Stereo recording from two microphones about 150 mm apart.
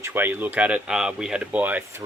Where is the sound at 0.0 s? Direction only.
15° right (ahead or behind).